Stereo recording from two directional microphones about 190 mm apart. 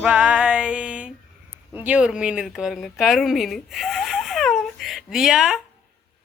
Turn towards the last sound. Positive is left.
turn(degrees=0)  # may be behind; listen again after turning